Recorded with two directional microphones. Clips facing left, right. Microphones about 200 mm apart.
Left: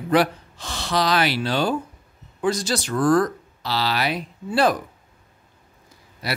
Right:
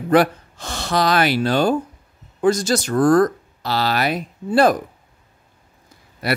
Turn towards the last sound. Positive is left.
turn(degrees=-55)  # may be behind; listen again after turning